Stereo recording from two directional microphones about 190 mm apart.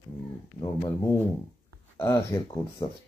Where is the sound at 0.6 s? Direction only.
15° left (ahead or behind).